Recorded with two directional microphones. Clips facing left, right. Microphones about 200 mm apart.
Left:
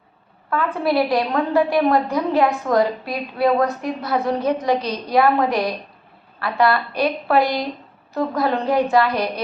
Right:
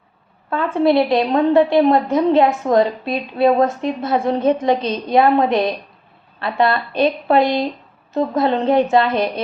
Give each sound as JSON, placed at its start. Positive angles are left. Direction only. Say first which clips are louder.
{"t": 0.5, "sound": "a woman's voice", "louder": "right 4 dB", "side_deg": -25}